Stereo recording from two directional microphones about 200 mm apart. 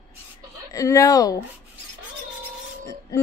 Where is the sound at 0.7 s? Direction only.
15° left (ahead or behind).